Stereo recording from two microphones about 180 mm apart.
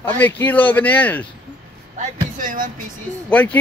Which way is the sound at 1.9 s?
45° right (ahead or behind).